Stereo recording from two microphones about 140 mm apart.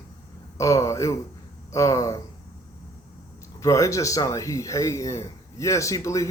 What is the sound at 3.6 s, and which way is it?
Speech, 20° left (ahead or behind).